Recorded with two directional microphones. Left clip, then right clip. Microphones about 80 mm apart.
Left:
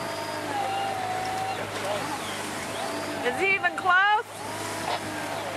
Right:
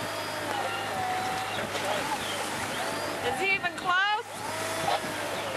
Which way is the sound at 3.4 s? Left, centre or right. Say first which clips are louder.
Left 6 dB; centre.